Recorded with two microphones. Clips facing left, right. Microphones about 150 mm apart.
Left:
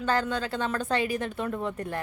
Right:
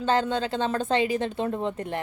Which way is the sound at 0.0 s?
25° right (ahead or behind).